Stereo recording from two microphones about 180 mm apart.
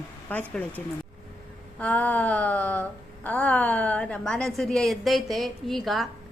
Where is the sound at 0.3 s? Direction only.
10° left (ahead or behind).